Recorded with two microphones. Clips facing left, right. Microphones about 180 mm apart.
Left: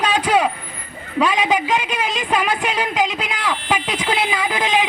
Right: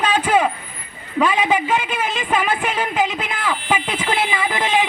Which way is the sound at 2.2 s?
5° right (ahead or behind).